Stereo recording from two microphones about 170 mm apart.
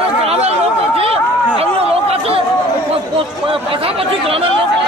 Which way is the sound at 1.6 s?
35° right (ahead or behind).